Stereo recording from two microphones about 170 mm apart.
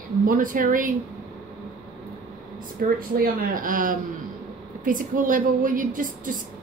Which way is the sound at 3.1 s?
55° right (ahead or behind).